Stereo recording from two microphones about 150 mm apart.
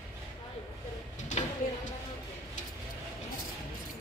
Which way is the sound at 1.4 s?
45° left (ahead or behind).